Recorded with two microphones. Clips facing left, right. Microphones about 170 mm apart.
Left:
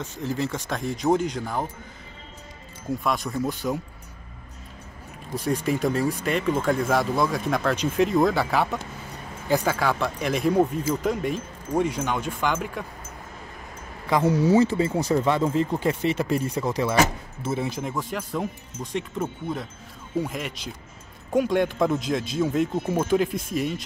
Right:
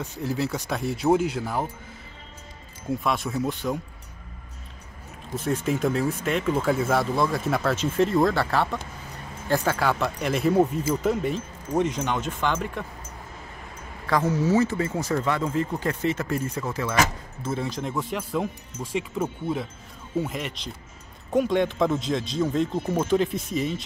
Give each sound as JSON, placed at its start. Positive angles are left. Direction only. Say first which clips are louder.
{"t": 0.2, "sound": "a man's voice", "louder": "even", "side_deg": -10}
{"t": 2.9, "sound": "speech", "louder": "even", "side_deg": 0}
{"t": 5.4, "sound": "speech", "louder": "even", "side_deg": 0}
{"t": 11.3, "sound": "speech", "louder": "even", "side_deg": 10}
{"t": 14.2, "sound": "speech", "louder": "left 4 dB", "side_deg": 30}
{"t": 16.8, "sound": "speech", "louder": "left 2 dB", "side_deg": 30}
{"t": 17.5, "sound": "speech", "louder": "left 1 dB", "side_deg": 5}